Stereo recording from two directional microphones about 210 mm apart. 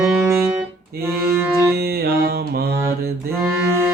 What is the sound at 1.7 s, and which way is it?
Music, 45° right (ahead or behind).